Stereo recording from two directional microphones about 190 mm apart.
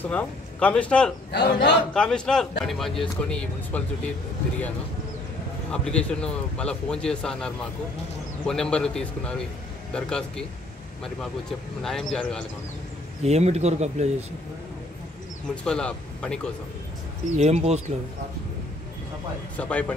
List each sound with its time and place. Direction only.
0.0 s speech: 10° left (ahead or behind)
1.3 s a man's voice: 65° left (ahead or behind)
2.0 s speech: 5° left (ahead or behind)
5.7 s speech: 5° left (ahead or behind)
11.8 s speech: centre (ahead or behind)
13.2 s speech: 35° right (ahead or behind)
15.5 s speech: 5° left (ahead or behind)
17.4 s speech: 35° right (ahead or behind)
19.5 s speech: 5° left (ahead or behind)